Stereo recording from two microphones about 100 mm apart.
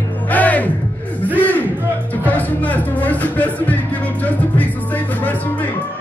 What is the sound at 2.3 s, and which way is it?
Music, 15° left (ahead or behind).